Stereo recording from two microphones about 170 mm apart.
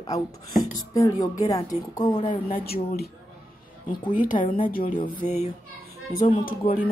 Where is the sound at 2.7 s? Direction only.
65° left (ahead or behind).